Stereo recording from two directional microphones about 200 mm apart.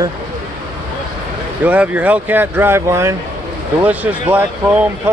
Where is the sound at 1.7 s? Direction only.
10° right (ahead or behind).